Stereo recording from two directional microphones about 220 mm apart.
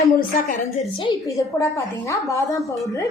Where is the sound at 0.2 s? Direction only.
40° left (ahead or behind).